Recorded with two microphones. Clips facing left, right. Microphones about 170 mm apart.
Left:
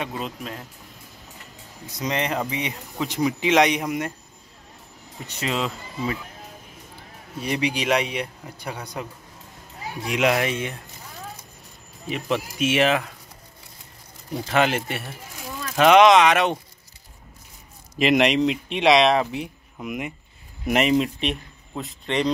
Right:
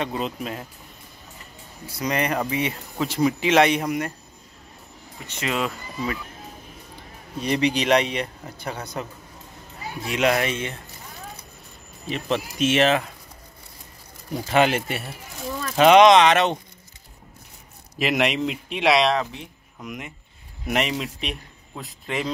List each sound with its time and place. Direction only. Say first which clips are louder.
0.1 s speech: right 3 dB; 5° right (ahead or behind)
2.0 s speech: right 1 dB; 20° left (ahead or behind)
5.2 s speech: left 1 dB; 40° left (ahead or behind)
5.5 s speech: right 1 dB; 25° left (ahead or behind)
7.3 s speech: right 3 dB; 10° left (ahead or behind)
10.0 s speech: even; 10° left (ahead or behind)
12.1 s speech: even; 10° left (ahead or behind)
14.3 s speech: right 2 dB; 5° right (ahead or behind)
17.9 s speech: left 4 dB; centre (ahead or behind)